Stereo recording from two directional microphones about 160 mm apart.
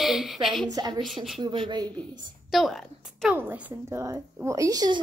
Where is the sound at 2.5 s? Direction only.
Centre (ahead or behind).